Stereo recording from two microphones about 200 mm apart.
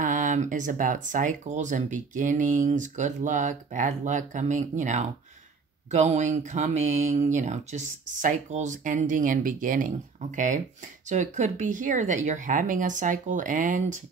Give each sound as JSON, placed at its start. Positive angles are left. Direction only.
{"t": 0.0, "sound": "speech", "side_deg": -40}